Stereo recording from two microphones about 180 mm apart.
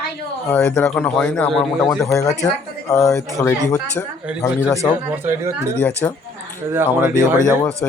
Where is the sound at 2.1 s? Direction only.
20° left (ahead or behind).